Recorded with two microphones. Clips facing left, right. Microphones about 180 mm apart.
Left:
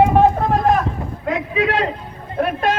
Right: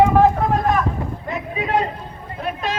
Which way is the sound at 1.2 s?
90° left.